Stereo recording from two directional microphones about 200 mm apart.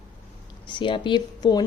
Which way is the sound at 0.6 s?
25° left (ahead or behind).